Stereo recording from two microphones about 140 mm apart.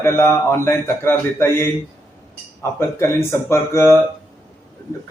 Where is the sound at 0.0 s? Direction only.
20° left (ahead or behind).